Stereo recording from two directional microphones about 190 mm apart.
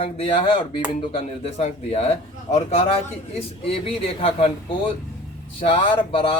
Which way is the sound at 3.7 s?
30° left (ahead or behind).